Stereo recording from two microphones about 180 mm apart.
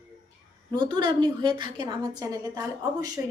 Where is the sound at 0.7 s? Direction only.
25° right (ahead or behind).